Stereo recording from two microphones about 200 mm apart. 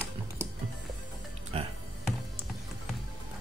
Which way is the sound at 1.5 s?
30° right (ahead or behind).